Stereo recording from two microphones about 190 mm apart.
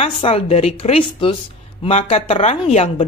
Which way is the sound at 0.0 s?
30° left (ahead or behind).